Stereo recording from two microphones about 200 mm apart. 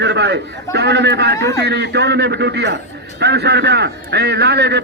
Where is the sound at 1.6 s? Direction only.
55° right (ahead or behind).